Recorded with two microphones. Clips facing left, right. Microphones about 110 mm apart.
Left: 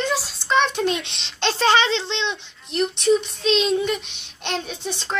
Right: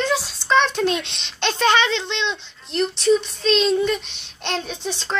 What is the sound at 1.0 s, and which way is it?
A child's voice, 25° left (ahead or behind).